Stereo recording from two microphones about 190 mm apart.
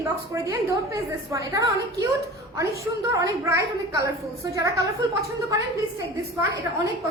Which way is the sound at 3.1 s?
15° right (ahead or behind).